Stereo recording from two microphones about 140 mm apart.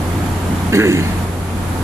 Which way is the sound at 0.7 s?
20° right (ahead or behind).